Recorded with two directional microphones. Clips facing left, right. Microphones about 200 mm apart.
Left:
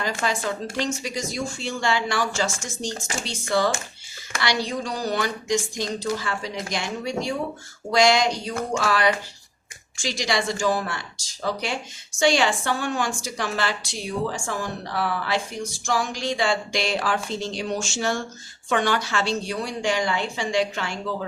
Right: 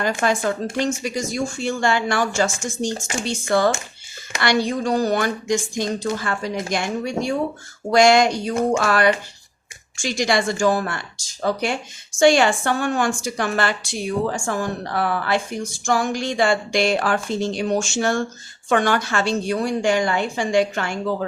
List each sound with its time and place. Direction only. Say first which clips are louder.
0.0 s a woman's voice: right 5 dB; 55° right (ahead or behind)